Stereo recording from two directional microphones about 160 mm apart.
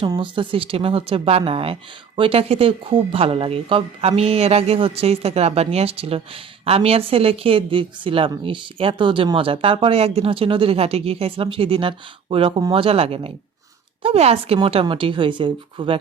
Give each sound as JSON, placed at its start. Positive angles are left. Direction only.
{"t": 0.0, "sound": "speech", "side_deg": -30}